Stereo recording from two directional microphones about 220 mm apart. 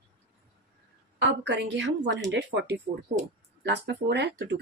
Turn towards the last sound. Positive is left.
turn(degrees=-50)  # may be behind; listen again after turning